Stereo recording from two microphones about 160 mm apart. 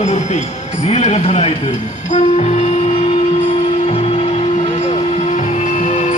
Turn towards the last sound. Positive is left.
turn(degrees=45)  # may be behind; listen again after turning